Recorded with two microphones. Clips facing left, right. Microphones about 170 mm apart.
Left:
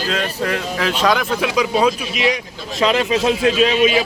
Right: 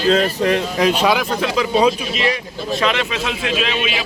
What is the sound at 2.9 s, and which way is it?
A man's voice, 35° left (ahead or behind).